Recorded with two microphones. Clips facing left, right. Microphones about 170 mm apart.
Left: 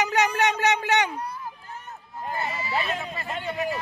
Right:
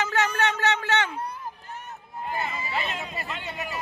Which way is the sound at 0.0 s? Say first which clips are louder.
Left 2 dB; 15° left (ahead or behind).